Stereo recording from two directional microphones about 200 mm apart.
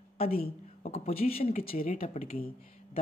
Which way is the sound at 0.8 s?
30° left (ahead or behind).